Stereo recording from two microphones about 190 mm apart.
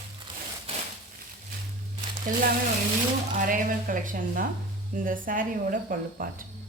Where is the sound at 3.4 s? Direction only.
45° right (ahead or behind).